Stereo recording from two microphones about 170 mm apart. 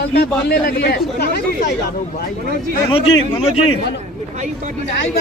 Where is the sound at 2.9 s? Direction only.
30° left (ahead or behind).